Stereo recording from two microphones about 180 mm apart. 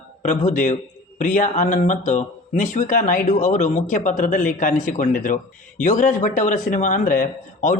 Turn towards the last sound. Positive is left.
turn(degrees=45)  # may be behind; listen again after turning